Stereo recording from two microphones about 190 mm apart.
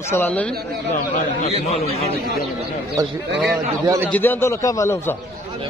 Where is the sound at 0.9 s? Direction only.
45° left (ahead or behind).